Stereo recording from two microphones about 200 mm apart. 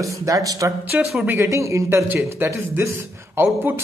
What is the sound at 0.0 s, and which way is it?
Speech, 15° right (ahead or behind).